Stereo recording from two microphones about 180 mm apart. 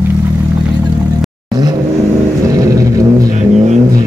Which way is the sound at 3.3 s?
40° right (ahead or behind).